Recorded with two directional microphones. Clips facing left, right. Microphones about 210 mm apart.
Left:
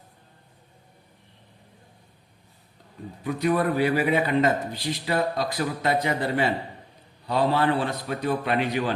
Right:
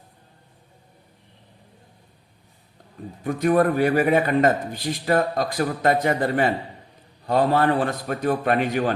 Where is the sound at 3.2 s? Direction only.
50° right (ahead or behind).